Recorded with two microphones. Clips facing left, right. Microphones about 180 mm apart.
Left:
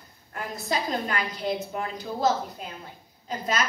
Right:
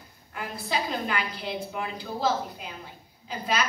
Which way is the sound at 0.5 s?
45° left (ahead or behind).